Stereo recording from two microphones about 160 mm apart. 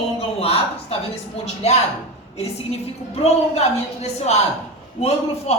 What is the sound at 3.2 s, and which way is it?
A man's voice, 40° left (ahead or behind).